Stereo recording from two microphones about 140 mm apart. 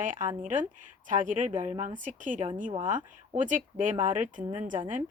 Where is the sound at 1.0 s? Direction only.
65° right (ahead or behind).